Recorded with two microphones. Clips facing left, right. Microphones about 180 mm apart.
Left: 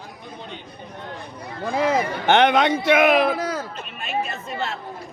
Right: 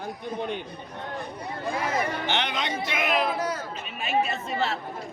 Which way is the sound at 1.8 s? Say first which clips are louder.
Left 8 dB; 75° left (ahead or behind).